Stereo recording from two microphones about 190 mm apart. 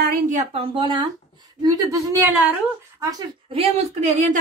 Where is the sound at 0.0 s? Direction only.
45° right (ahead or behind).